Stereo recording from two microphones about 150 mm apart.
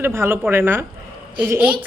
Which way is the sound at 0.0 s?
15° right (ahead or behind).